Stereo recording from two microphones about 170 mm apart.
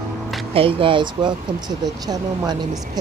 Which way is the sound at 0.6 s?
30° right (ahead or behind).